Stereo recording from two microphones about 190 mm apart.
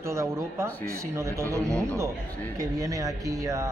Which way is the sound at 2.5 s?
15° right (ahead or behind).